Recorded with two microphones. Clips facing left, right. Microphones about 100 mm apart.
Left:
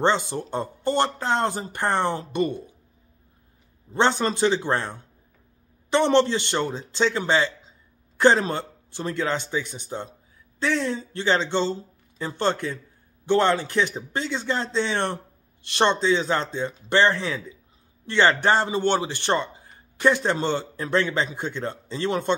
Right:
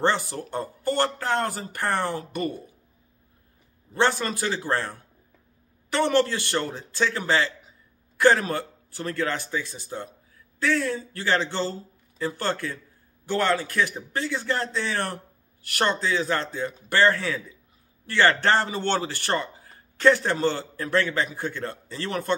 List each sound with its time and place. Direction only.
0.0 s a man's voice: 20° left (ahead or behind)
3.9 s a man's voice: 20° left (ahead or behind)